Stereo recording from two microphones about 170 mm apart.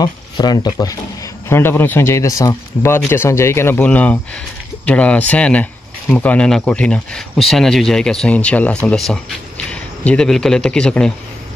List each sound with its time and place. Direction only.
0.0 s a man's voice: 25° left (ahead or behind); by 11.1 s 5° left (ahead or behind)